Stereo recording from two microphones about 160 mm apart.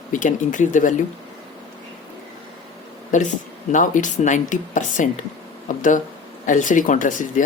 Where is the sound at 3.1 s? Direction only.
50° left (ahead or behind).